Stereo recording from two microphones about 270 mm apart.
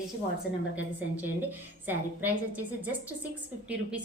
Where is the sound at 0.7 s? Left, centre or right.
Centre.